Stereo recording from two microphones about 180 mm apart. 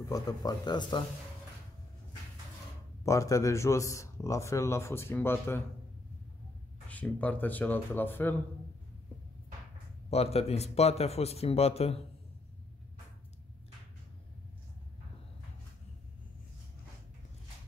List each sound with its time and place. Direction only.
0.1 s speech: 20° left (ahead or behind)
3.1 s a man's voice: 15° left (ahead or behind)
6.9 s a man's voice: 10° left (ahead or behind)
10.0 s speech: 35° left (ahead or behind)